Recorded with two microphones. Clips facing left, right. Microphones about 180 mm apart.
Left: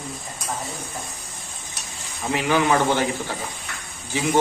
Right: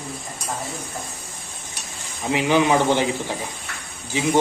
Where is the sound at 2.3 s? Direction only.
15° right (ahead or behind).